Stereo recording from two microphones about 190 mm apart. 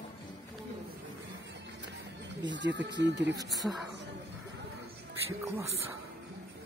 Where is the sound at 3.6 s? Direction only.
5° right (ahead or behind).